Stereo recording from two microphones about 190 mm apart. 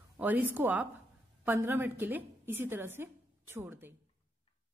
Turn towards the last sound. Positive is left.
turn(degrees=-10)  # may be behind; listen again after turning